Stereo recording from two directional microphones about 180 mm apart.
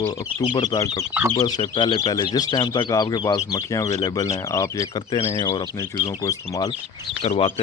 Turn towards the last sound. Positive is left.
turn(degrees=30)  # may be behind; listen again after turning